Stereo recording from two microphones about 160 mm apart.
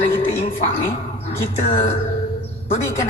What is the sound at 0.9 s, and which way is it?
Speech, 40° left (ahead or behind).